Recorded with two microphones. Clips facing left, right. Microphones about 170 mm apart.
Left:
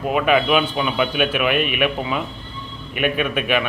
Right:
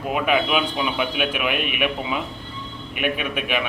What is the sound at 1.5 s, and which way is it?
Speech, 55° left (ahead or behind).